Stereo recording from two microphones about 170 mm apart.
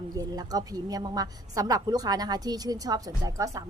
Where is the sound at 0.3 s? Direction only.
20° right (ahead or behind).